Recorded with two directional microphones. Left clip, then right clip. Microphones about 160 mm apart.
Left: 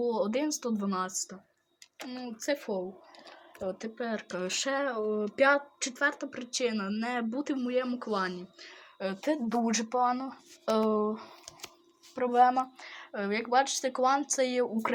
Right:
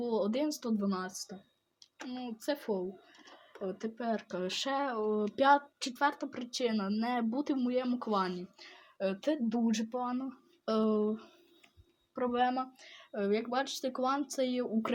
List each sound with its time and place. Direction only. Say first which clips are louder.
0.0 s speech: left 3 dB; 10° left (ahead or behind)
2.2 s a woman's voice: left 4 dB; 5° left (ahead or behind)
3.7 s a woman's voice: left 1 dB; centre (ahead or behind)
5.4 s a woman's voice: left 2 dB; 15° right (ahead or behind)
9.0 s a woman's voice: left 1 dB; 5° left (ahead or behind)
10.7 s speech: left 3 dB; 20° right (ahead or behind)
12.1 s a woman's voice: left 7 dB; 5° left (ahead or behind)